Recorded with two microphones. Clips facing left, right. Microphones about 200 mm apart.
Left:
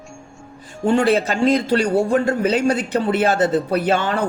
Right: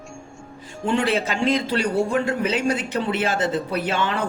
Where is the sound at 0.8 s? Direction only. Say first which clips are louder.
Left 5 dB; 40° left (ahead or behind).